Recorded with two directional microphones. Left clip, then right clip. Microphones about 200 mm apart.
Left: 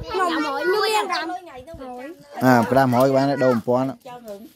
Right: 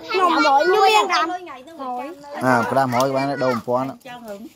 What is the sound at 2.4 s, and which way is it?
Speech, 60° left (ahead or behind).